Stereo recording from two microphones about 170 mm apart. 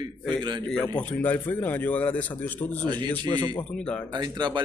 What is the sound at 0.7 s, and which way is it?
Speech, 5° left (ahead or behind).